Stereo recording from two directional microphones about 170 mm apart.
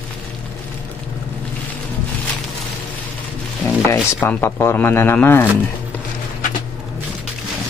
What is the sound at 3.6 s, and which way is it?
Speech, 10° left (ahead or behind).